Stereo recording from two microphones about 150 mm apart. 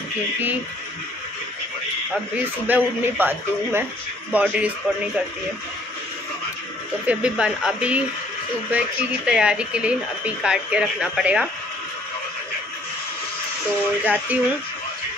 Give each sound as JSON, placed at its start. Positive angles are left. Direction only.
{"t": 2.6, "sound": "speech", "side_deg": -10}
{"t": 7.1, "sound": "speech", "side_deg": -10}
{"t": 14.0, "sound": "speech", "side_deg": -10}